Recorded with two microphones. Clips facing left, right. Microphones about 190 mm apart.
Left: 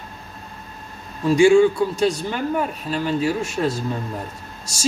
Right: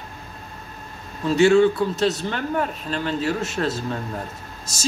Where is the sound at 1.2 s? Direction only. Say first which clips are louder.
Left 2 dB; 10° left (ahead or behind).